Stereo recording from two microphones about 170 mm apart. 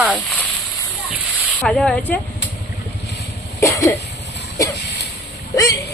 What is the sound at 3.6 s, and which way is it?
Cough, 20° left (ahead or behind).